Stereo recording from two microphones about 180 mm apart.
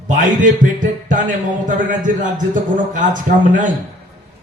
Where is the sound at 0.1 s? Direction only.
45° right (ahead or behind).